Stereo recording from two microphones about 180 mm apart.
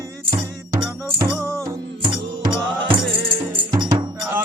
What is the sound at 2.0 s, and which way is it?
Music, 25° right (ahead or behind).